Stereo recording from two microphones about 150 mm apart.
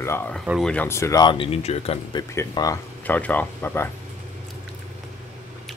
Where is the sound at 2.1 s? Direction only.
25° left (ahead or behind).